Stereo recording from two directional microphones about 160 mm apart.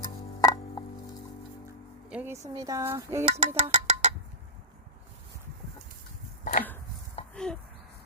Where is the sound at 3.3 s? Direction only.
40° right (ahead or behind).